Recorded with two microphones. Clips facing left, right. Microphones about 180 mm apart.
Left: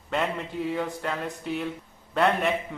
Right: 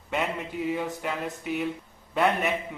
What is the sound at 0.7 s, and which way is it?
Speech, 10° right (ahead or behind).